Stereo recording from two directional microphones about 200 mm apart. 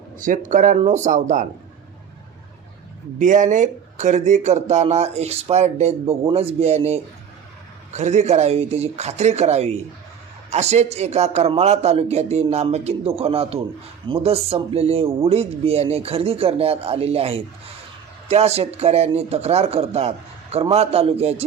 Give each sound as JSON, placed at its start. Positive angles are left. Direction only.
{"t": 0.2, "sound": "speech", "side_deg": -40}
{"t": 3.2, "sound": "speech", "side_deg": -40}